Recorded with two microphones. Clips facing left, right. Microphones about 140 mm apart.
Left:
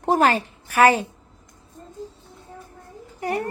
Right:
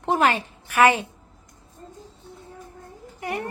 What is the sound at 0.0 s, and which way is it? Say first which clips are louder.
A woman's voice: left 2 dB; 40° left (ahead or behind).